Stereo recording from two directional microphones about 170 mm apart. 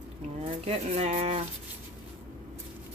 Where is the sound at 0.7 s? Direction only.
35° right (ahead or behind).